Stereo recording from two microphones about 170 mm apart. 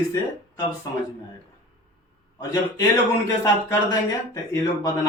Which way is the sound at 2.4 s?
20° left (ahead or behind).